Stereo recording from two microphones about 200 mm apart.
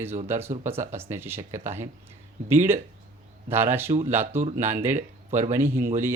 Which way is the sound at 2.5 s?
10° right (ahead or behind).